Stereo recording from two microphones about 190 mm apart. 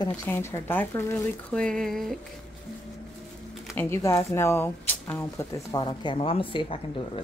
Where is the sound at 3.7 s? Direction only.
15° left (ahead or behind).